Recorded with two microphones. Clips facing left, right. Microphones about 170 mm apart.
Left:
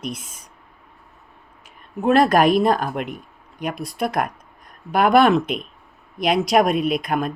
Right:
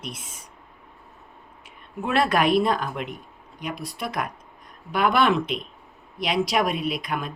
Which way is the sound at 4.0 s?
50° left (ahead or behind).